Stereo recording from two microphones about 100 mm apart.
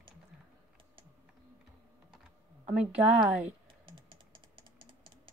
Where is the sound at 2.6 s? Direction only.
15° right (ahead or behind).